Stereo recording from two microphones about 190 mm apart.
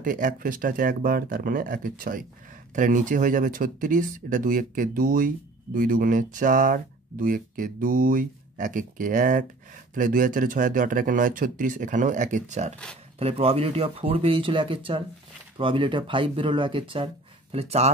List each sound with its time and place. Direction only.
0.0 s speech: 45° right (ahead or behind)